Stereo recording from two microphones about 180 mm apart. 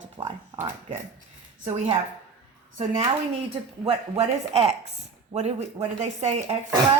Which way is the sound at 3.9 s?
30° right (ahead or behind).